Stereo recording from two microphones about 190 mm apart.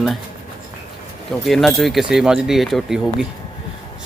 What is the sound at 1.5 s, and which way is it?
A man's voice, centre (ahead or behind).